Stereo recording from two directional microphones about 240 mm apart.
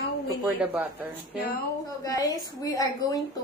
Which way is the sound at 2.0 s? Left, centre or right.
Centre.